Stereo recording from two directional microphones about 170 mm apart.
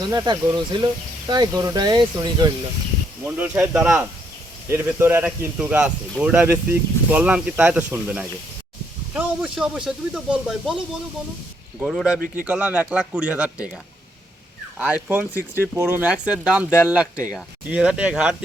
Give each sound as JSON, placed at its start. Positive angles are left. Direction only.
{"t": 0.0, "sound": "speech", "side_deg": -25}
{"t": 3.2, "sound": "speech", "side_deg": -10}
{"t": 11.8, "sound": "speech", "side_deg": 0}
{"t": 14.8, "sound": "speech", "side_deg": -5}